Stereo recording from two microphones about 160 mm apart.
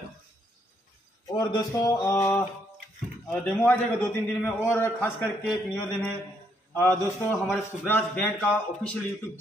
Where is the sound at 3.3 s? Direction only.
10° left (ahead or behind).